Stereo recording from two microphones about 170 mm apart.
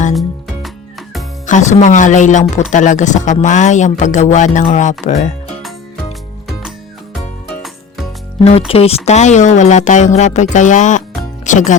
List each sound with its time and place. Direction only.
0.1 s music: centre (ahead or behind)
1.5 s speech: 45° left (ahead or behind)
7.2 s music: centre (ahead or behind)
8.4 s speech: 35° left (ahead or behind)